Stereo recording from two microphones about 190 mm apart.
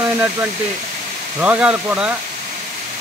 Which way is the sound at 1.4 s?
5° right (ahead or behind).